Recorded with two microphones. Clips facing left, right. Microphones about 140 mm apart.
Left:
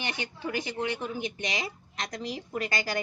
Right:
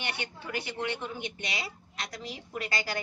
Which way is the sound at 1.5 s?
40° left (ahead or behind).